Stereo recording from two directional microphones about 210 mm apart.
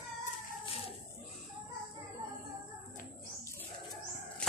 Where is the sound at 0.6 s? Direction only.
25° left (ahead or behind).